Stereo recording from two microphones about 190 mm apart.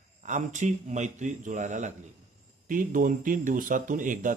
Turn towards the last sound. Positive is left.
turn(degrees=-45)  # may be behind; listen again after turning